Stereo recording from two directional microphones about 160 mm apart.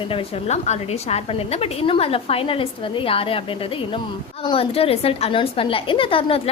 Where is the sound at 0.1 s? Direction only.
40° left (ahead or behind).